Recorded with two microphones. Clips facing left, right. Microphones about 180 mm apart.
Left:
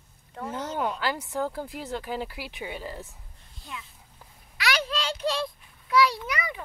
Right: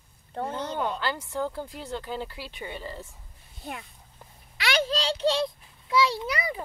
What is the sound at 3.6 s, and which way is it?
Speech, 60° right (ahead or behind).